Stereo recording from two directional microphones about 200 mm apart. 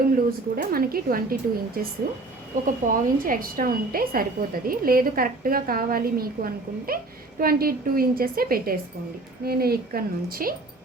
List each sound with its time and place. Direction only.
0.3 s a woman's voice: 50° right (ahead or behind)
2.8 s a woman's voice: 45° right (ahead or behind)